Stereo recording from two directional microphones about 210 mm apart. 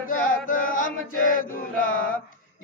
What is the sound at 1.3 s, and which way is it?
Chant, 40° left (ahead or behind).